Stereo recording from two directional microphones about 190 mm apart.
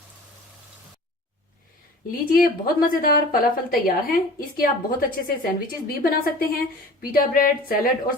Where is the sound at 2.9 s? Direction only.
50° left (ahead or behind).